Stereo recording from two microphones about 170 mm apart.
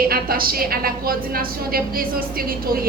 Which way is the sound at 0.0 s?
60° right (ahead or behind).